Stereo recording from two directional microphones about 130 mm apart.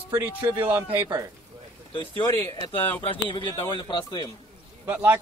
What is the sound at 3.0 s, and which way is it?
Speech, 40° left (ahead or behind).